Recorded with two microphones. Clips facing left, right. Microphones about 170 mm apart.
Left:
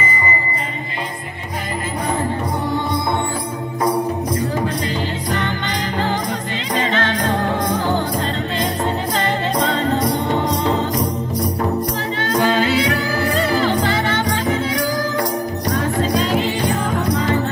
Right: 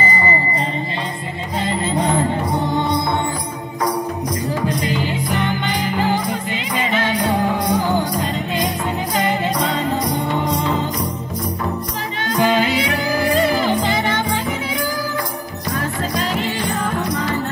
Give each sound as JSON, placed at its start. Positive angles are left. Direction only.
{"t": 0.0, "sound": "music", "side_deg": -35}
{"t": 4.6, "sound": "music", "side_deg": -10}
{"t": 9.2, "sound": "a capella", "side_deg": -10}
{"t": 12.4, "sound": "music", "side_deg": -10}